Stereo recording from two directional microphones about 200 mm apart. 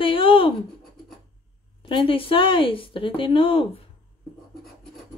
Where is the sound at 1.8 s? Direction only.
25° left (ahead or behind).